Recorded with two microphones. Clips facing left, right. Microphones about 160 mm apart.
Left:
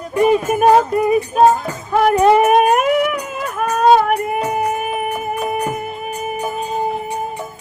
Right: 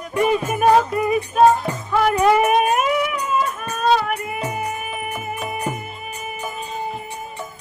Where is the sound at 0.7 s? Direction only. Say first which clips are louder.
Left 4 dB; 35° left (ahead or behind); by 3.9 s 65° left (ahead or behind).